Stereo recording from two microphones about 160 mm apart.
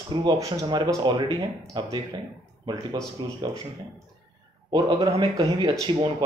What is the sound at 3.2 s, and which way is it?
Speech, 25° right (ahead or behind).